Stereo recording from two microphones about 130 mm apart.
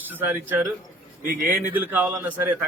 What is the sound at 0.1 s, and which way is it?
A man's voice, 15° right (ahead or behind).